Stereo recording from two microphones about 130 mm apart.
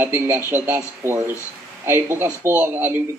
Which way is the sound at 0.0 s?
15° right (ahead or behind).